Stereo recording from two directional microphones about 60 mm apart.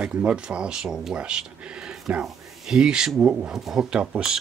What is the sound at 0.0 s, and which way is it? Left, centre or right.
Speech, centre.